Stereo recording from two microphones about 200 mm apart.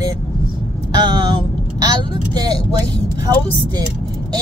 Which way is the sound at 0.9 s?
20° right (ahead or behind).